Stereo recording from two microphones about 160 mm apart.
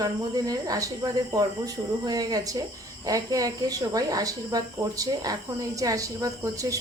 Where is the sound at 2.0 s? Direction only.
25° right (ahead or behind).